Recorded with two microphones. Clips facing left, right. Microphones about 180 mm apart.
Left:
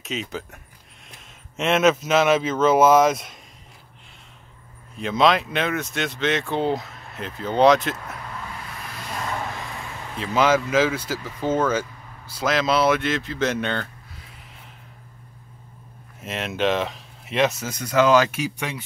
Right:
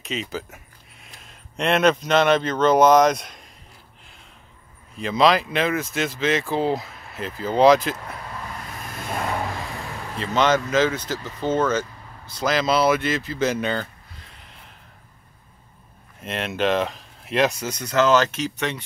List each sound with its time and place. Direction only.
0.0 s speech: centre (ahead or behind)
4.9 s speech: centre (ahead or behind)
10.1 s speech: 5° left (ahead or behind)
16.2 s speech: 5° left (ahead or behind)